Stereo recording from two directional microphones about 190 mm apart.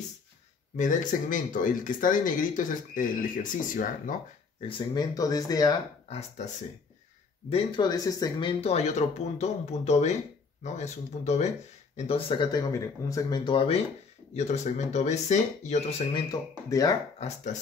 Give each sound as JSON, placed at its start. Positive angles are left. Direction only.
{"t": 0.7, "sound": "speech", "side_deg": 40}
{"t": 4.6, "sound": "speech", "side_deg": 25}
{"t": 6.0, "sound": "speech", "side_deg": 35}
{"t": 7.5, "sound": "speech", "side_deg": 25}